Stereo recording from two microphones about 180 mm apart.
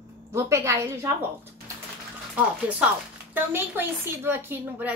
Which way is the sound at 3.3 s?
10° right (ahead or behind).